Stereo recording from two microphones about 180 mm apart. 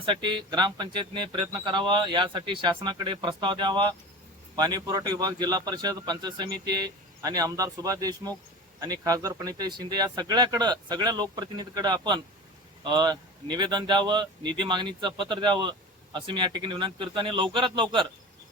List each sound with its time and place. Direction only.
0.0 s speech: 25° right (ahead or behind)